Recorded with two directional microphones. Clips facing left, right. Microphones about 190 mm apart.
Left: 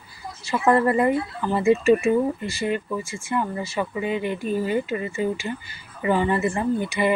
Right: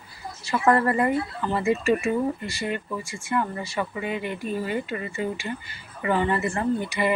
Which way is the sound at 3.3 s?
20° left (ahead or behind).